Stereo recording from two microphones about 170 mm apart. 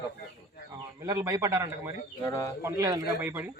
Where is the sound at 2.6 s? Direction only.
25° right (ahead or behind).